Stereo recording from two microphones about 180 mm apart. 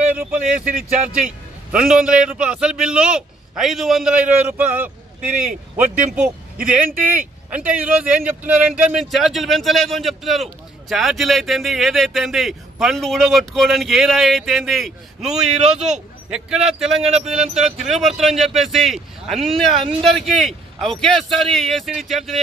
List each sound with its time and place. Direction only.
0.5 s speech: 45° right (ahead or behind)
1.7 s speech: 5° right (ahead or behind)
6.1 s speech: 10° right (ahead or behind)
17.0 s wind chime: 35° right (ahead or behind)
17.3 s speech: 5° right (ahead or behind)